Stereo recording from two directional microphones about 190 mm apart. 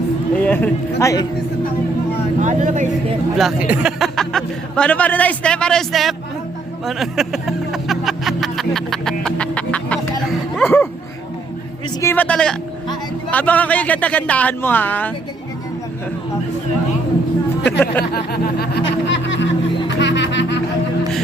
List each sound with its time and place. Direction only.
0.3 s speech: 10° left (ahead or behind)
2.4 s speech: 40° right (ahead or behind)
3.3 s speech: 5° right (ahead or behind)
6.8 s music: centre (ahead or behind)
10.5 s a sound: 10° left (ahead or behind)
11.9 s speech: 10° left (ahead or behind)
17.7 s speech: 10° left (ahead or behind)
18.0 s music: 55° left (ahead or behind)
19.0 s music: 75° left (ahead or behind)